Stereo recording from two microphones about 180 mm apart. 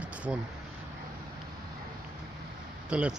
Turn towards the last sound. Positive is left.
turn(degrees=-5)  # may be behind; listen again after turning